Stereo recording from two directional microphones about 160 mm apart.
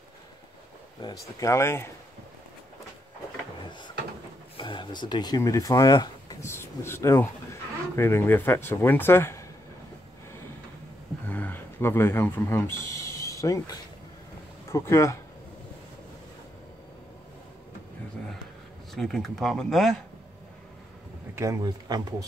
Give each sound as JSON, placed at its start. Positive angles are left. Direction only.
{"t": 1.0, "sound": "speech", "side_deg": 25}
{"t": 4.6, "sound": "speech", "side_deg": 30}
{"t": 11.2, "sound": "a sound", "side_deg": 10}
{"t": 14.7, "sound": "speech", "side_deg": 20}
{"t": 18.9, "sound": "speech", "side_deg": 0}
{"t": 21.4, "sound": "a man's voice", "side_deg": -20}